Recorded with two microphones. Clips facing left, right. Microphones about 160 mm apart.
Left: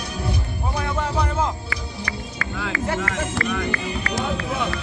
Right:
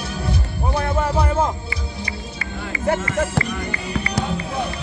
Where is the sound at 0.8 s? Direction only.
55° right (ahead or behind).